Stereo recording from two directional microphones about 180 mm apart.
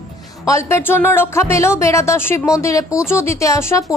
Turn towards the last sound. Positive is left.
turn(degrees=15)  # may be behind; listen again after turning